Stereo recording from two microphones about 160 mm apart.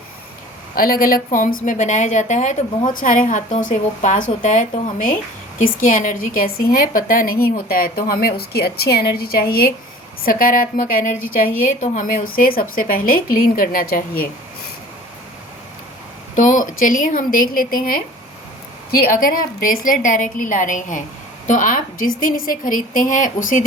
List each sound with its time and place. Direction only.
0.8 s a woman's voice: 65° left (ahead or behind)
16.3 s a woman's voice: 55° left (ahead or behind)